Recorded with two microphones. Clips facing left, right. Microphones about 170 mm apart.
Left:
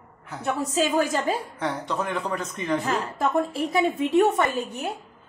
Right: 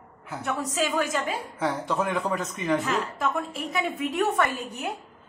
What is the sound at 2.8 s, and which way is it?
A woman's voice, 35° left (ahead or behind).